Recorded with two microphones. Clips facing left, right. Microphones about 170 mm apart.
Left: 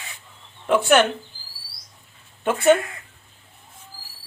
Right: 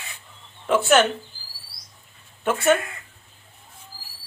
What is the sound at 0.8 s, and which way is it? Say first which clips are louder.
Speech: even; 10° left (ahead or behind).